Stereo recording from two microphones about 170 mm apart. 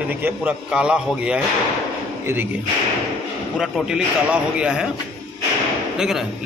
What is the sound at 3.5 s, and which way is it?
Speech, centre (ahead or behind).